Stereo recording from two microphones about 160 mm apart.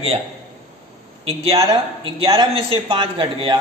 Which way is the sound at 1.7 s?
35° right (ahead or behind).